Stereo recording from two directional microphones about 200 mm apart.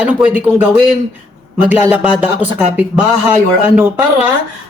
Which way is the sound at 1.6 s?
10° right (ahead or behind).